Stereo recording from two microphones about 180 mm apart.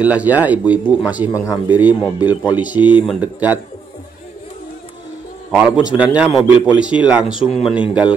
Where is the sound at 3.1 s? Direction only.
10° right (ahead or behind).